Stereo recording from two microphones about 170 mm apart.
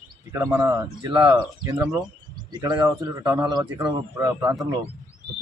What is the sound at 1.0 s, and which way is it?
Speech, 25° right (ahead or behind).